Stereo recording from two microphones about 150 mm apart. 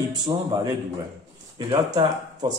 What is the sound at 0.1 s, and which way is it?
Speech, 25° right (ahead or behind).